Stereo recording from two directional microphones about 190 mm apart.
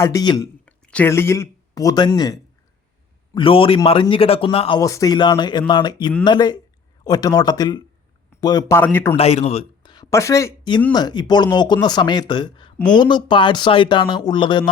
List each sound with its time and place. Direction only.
0.0 s speech: 20° left (ahead or behind)
0.6 s speech: 5° left (ahead or behind); by 4.8 s 30° left (ahead or behind)
4.8 s speech: 15° left (ahead or behind)
9.1 s speech: 30° left (ahead or behind)